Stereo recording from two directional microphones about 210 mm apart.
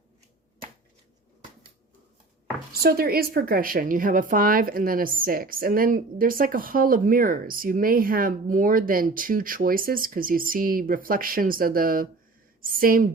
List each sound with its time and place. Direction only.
2.8 s a woman's voice: 45° right (ahead or behind)